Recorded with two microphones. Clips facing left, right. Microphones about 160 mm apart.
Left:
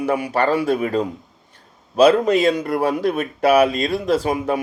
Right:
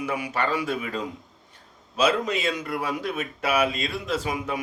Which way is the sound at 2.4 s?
35° left (ahead or behind).